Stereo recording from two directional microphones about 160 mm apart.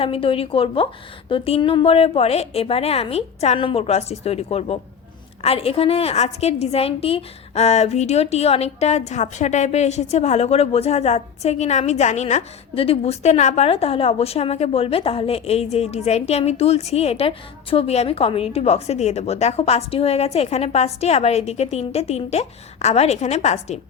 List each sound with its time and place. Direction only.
0.0 s a woman's voice: 35° left (ahead or behind)